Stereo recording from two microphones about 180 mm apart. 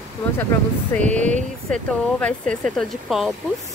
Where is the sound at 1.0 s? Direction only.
40° right (ahead or behind).